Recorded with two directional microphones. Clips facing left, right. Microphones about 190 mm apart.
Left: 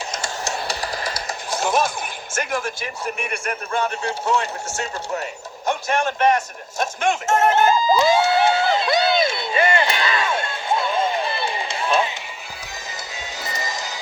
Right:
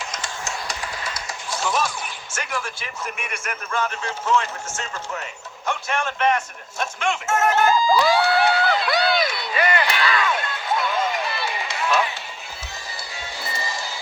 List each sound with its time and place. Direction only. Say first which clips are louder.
0.2 s a sound: left 4 dB; 35° left (ahead or behind)
1.5 s a man's voice: left 4 dB; 50° left (ahead or behind); by 4.4 s 30° left (ahead or behind)
5.6 s a man's voice: left 4 dB; 40° left (ahead or behind)
7.3 s crowd: left 1 dB; 25° left (ahead or behind)
13.4 s music: left 1 dB; 20° left (ahead or behind)